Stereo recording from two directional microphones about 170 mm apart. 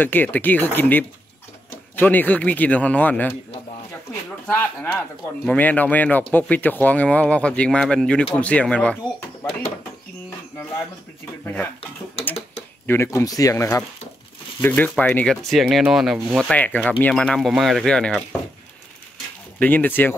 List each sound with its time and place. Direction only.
0.0 s speech: 10° left (ahead or behind)
11.4 s speech: 10° left (ahead or behind)
12.8 s speech: 15° left (ahead or behind)
19.6 s speech: 10° left (ahead or behind)